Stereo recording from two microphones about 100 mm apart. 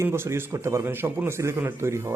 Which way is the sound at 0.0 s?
25° right (ahead or behind).